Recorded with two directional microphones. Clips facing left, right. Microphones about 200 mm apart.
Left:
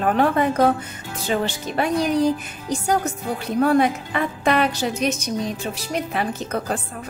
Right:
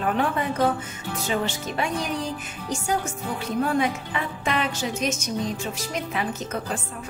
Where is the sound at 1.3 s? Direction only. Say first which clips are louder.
Left 4 dB; 40° left (ahead or behind).